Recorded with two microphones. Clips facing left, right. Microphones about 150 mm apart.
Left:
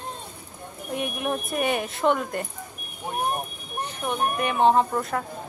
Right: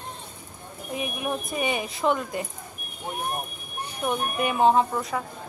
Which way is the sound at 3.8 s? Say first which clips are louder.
Left 1 dB; 10° right (ahead or behind).